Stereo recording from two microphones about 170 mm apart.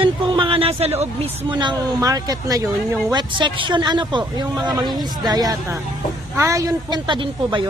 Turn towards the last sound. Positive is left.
turn(degrees=-30)  # may be behind; listen again after turning